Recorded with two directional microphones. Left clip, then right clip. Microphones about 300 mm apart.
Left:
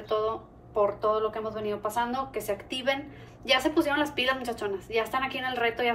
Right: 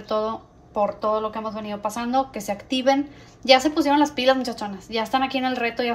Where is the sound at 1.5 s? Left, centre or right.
Right.